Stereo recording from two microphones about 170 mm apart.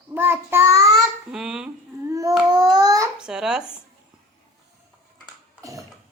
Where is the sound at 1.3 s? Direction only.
5° right (ahead or behind).